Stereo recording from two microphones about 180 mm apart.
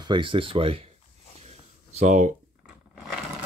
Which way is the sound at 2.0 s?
45° right (ahead or behind).